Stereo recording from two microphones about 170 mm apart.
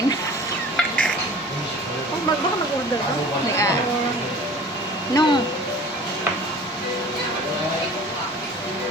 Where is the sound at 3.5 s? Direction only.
15° left (ahead or behind).